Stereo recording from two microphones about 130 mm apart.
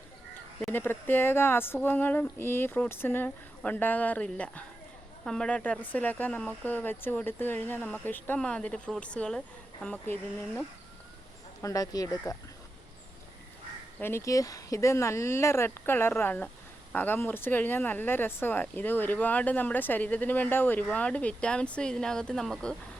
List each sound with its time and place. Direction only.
0.7 s speech: 15° left (ahead or behind)
11.6 s speech: 30° left (ahead or behind)
14.0 s speech: 20° left (ahead or behind); by 22.7 s 5° left (ahead or behind)